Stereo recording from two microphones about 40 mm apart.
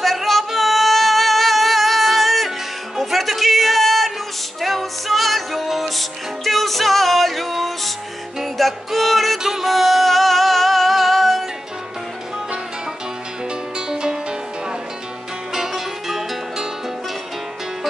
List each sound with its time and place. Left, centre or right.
0.0 s music: centre
13.7 s music: centre
15.5 s music: centre